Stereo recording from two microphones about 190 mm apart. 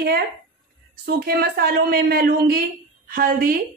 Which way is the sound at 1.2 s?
55° right (ahead or behind).